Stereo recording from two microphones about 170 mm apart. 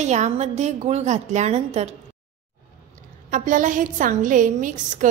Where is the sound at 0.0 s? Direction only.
40° right (ahead or behind).